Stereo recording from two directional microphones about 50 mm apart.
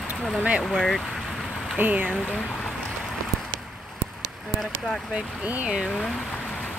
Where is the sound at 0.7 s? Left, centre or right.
Centre.